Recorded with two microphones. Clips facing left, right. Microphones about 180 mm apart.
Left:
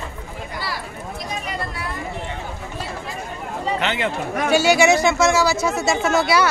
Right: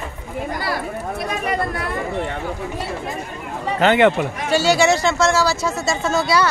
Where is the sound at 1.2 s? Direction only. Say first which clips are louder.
Right 6 dB; 60° right (ahead or behind).